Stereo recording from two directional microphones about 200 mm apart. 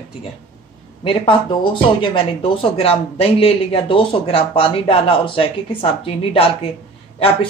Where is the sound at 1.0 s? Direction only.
25° left (ahead or behind).